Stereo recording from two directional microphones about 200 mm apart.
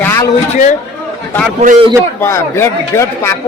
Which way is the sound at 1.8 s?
15° right (ahead or behind).